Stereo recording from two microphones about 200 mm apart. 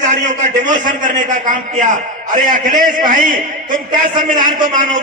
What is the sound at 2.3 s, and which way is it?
A man's voice, 40° right (ahead or behind).